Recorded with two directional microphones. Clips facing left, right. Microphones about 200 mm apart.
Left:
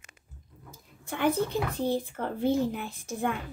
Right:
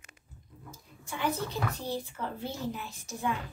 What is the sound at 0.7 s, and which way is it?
A woman's voice, 55° left (ahead or behind).